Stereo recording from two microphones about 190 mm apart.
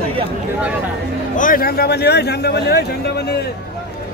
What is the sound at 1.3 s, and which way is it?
A man's voice, 45° left (ahead or behind).